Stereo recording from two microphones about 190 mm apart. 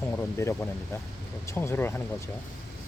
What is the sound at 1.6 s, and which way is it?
Speech, 10° left (ahead or behind).